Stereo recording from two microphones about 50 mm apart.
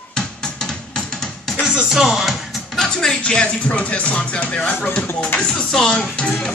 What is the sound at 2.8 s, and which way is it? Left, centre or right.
Music, centre.